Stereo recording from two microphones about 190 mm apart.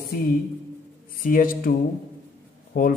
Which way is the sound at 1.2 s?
45° left (ahead or behind).